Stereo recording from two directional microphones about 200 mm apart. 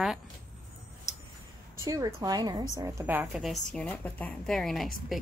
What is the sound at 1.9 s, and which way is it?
A woman's voice, 15° right (ahead or behind).